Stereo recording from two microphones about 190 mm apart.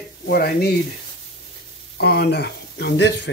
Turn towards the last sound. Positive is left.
turn(degrees=65)  # may be behind; listen again after turning